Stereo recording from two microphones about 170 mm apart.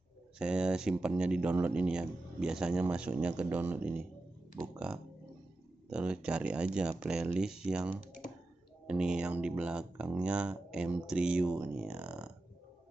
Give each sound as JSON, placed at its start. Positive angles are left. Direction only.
{"t": 0.4, "sound": "speech", "side_deg": -5}
{"t": 5.9, "sound": "speech", "side_deg": -5}
{"t": 8.0, "sound": "computer keyboard", "side_deg": 50}
{"t": 8.8, "sound": "speech", "side_deg": -5}